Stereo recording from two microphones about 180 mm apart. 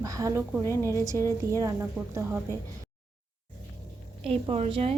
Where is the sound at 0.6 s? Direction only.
15° left (ahead or behind).